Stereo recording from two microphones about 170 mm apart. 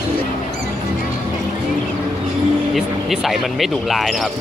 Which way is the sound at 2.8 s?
Centre (ahead or behind).